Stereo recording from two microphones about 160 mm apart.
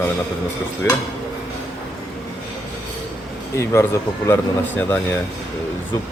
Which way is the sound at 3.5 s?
15° left (ahead or behind).